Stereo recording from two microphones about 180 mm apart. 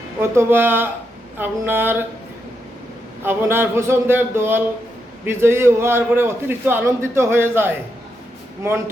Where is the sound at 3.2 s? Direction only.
15° right (ahead or behind).